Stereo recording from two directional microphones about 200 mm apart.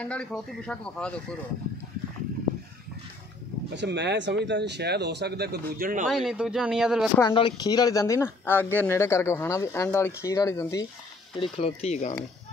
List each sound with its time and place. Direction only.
0.0 s speech: 5° left (ahead or behind)
3.7 s speech: 60° right (ahead or behind); by 6.0 s 45° right (ahead or behind)
6.0 s speech: centre (ahead or behind)
7.2 s speech: 20° left (ahead or behind)
11.3 s speech: 25° left (ahead or behind)